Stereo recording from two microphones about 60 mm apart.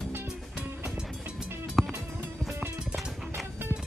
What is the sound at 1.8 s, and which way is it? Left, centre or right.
Music, centre.